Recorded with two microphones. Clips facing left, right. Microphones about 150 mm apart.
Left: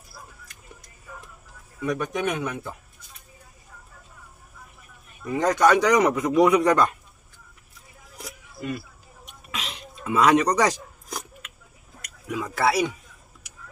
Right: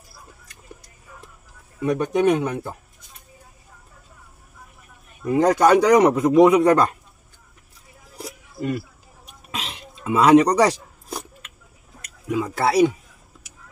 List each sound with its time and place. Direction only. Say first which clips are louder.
1.8 s a man's voice: right 6 dB; 30° right (ahead or behind)
5.2 s a man's voice: right 4 dB; 35° right (ahead or behind)
8.2 s a sound: right 6 dB; 30° right (ahead or behind)
12.3 s speech: right 2 dB; 25° right (ahead or behind)